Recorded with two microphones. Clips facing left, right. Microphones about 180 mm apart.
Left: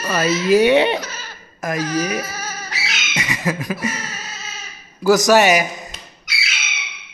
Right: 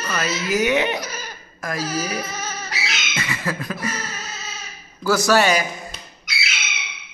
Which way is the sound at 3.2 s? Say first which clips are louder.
Left 4 dB; 15° left (ahead or behind).